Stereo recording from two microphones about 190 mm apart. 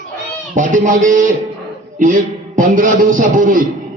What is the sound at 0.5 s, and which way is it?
A man's voice, 40° right (ahead or behind).